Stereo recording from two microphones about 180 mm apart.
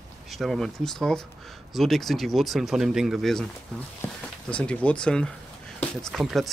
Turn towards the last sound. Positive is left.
turn(degrees=0)  # may be behind; listen again after turning